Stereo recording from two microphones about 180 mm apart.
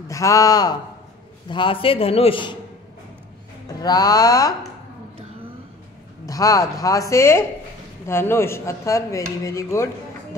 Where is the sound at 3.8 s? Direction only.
20° left (ahead or behind).